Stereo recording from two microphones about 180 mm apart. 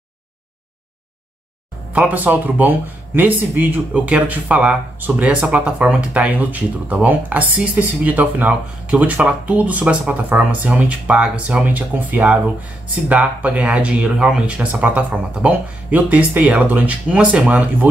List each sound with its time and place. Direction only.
2.0 s speech: 10° right (ahead or behind)